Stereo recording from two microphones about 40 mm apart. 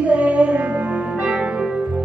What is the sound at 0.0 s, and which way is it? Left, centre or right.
Music, right.